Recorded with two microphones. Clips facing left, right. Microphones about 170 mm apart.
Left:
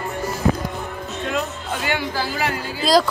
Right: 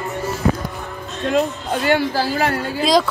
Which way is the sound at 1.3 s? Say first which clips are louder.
Right 8 dB; 40° right (ahead or behind).